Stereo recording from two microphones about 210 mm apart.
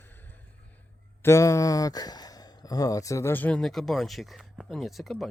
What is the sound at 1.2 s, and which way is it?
Speech, 15° left (ahead or behind).